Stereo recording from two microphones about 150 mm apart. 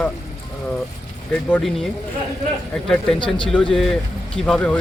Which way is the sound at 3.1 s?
35° left (ahead or behind).